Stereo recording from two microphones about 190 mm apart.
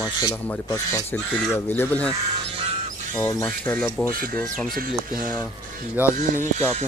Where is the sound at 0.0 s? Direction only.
20° left (ahead or behind).